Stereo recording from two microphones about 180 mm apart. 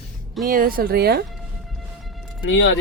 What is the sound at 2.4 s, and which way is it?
Speech, 90° left.